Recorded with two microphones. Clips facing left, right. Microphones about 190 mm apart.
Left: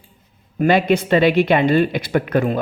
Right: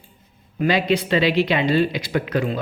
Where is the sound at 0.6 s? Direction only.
50° left (ahead or behind).